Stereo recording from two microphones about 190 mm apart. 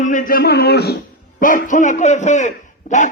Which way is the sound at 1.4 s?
45° left (ahead or behind).